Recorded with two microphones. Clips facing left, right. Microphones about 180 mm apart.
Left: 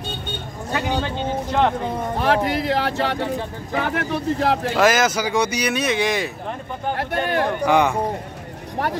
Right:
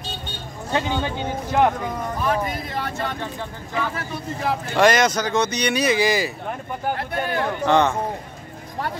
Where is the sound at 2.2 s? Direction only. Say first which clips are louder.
Left 5 dB; 80° left.